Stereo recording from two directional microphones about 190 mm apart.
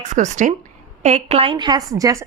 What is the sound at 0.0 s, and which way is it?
A woman's voice, 40° right (ahead or behind).